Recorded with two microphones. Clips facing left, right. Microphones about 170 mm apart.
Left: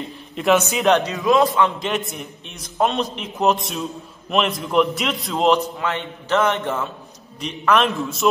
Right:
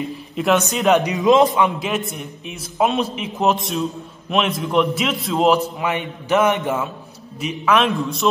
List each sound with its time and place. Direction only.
0.4 s a man's voice: centre (ahead or behind)
0.9 s a man's voice: 15° right (ahead or behind)
1.8 s a man's voice: centre (ahead or behind)
5.8 s a man's voice: 15° right (ahead or behind); by 8.3 s centre (ahead or behind)